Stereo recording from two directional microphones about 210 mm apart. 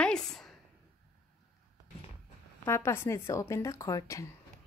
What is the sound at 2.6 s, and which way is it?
A woman's voice, 10° left (ahead or behind).